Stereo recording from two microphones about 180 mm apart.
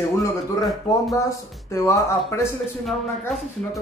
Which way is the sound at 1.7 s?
15° left (ahead or behind).